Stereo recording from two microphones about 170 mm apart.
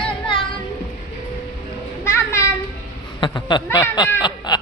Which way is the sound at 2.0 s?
15° left (ahead or behind).